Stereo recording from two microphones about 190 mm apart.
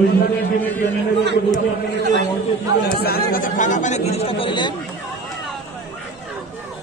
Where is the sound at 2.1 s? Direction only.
60° left (ahead or behind); by 4.7 s 25° left (ahead or behind).